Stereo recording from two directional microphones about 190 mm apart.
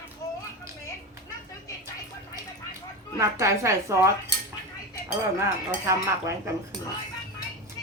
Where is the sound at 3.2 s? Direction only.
15° right (ahead or behind).